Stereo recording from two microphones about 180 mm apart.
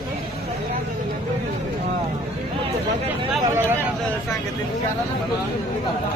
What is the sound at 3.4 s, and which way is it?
Speech, 15° right (ahead or behind).